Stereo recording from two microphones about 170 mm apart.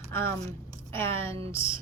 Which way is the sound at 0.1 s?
15° left (ahead or behind).